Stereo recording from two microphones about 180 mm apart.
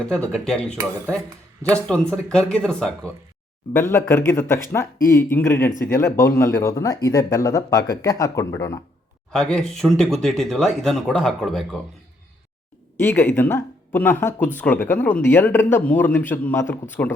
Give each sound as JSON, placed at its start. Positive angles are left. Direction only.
{"t": 0.0, "sound": "speech", "side_deg": 5}
{"t": 1.7, "sound": "speech", "side_deg": 5}
{"t": 9.3, "sound": "speech", "side_deg": 5}
{"t": 13.0, "sound": "speech", "side_deg": 10}